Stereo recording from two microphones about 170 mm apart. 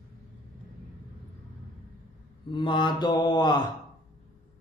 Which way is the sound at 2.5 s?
30° left (ahead or behind).